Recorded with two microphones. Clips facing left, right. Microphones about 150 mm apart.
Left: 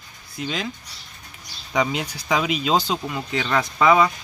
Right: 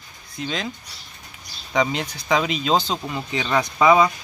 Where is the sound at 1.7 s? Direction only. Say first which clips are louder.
Right 1 dB; 10° left (ahead or behind).